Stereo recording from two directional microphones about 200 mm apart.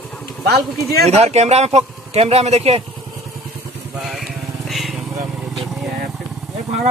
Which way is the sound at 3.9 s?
Centre (ahead or behind).